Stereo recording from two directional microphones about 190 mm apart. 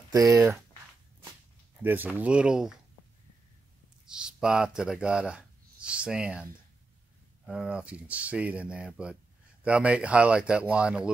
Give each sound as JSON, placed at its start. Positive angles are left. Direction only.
{"t": 0.1, "sound": "speech", "side_deg": -15}
{"t": 1.8, "sound": "speech", "side_deg": -10}
{"t": 4.0, "sound": "speech", "side_deg": -5}
{"t": 7.4, "sound": "speech", "side_deg": -5}